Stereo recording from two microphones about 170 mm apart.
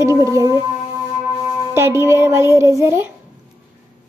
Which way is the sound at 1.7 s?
15° right (ahead or behind).